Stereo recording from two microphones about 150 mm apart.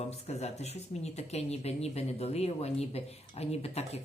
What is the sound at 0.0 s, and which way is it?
Speech, 45° left (ahead or behind).